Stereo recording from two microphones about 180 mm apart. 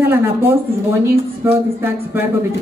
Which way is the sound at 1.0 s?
15° right (ahead or behind).